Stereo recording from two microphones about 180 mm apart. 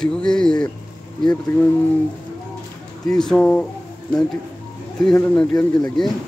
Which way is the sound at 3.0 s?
5° left (ahead or behind).